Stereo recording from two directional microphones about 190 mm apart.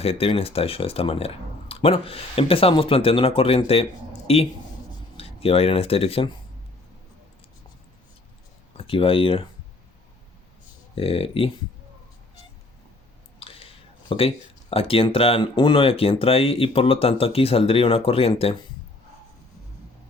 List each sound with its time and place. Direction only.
0.0 s speech: 30° left (ahead or behind)
8.8 s speech: 30° left (ahead or behind)
10.9 s speech: 30° left (ahead or behind)
13.4 s speech: 30° left (ahead or behind)